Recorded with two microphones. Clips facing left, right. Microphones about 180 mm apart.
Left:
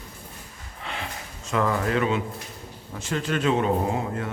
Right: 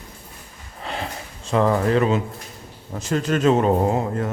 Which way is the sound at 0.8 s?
35° right (ahead or behind).